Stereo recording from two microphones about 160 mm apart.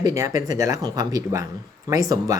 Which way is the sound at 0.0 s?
20° right (ahead or behind).